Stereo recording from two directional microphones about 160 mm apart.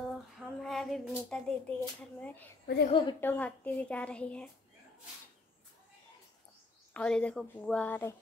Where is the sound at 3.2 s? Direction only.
10° left (ahead or behind).